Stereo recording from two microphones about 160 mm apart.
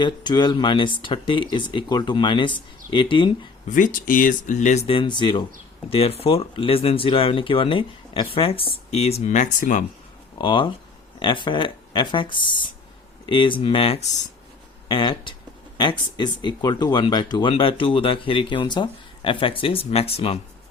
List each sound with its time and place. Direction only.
0.0 s speech: 25° left (ahead or behind)
3.7 s speech: 55° left (ahead or behind)
4.9 s speech: 30° left (ahead or behind); by 9.8 s 55° left (ahead or behind)
10.3 s speech: 30° left (ahead or behind)